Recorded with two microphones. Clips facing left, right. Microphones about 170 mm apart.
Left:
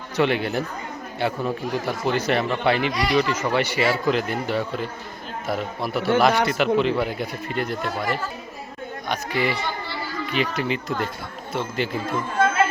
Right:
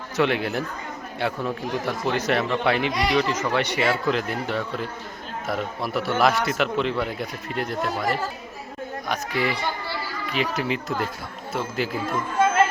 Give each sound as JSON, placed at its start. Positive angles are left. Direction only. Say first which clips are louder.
{"t": 0.2, "sound": "speech", "louder": "left 1 dB", "side_deg": 0}
{"t": 9.0, "sound": "speech", "louder": "left 1 dB", "side_deg": 0}